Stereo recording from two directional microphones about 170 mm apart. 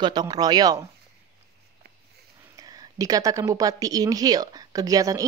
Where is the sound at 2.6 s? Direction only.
20° right (ahead or behind).